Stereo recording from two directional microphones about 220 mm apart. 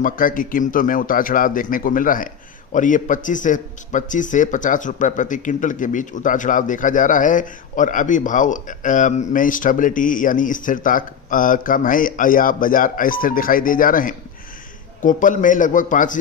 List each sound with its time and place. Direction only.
0.0 s a man's voice: 40° left (ahead or behind)